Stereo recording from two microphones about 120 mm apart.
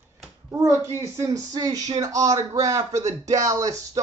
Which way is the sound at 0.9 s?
25° right (ahead or behind).